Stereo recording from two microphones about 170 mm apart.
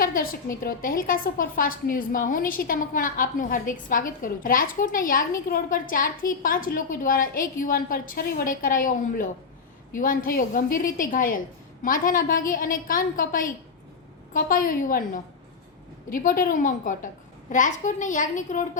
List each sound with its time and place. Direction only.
0.0 s a woman's voice: 55° left (ahead or behind)